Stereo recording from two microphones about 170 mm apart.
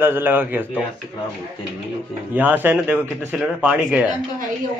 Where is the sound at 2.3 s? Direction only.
10° right (ahead or behind).